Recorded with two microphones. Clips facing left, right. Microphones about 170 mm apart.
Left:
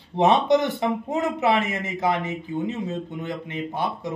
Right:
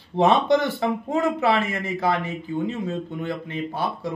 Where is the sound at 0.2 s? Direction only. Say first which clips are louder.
Even; 20° left (ahead or behind).